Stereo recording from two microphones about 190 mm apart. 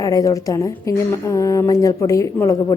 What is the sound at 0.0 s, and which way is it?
A woman's voice, 20° left (ahead or behind).